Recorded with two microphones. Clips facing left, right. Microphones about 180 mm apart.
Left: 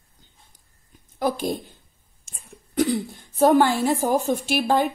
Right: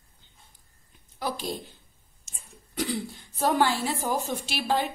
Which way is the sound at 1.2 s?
50° left (ahead or behind).